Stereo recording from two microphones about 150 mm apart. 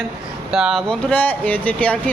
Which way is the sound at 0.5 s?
Centre (ahead or behind).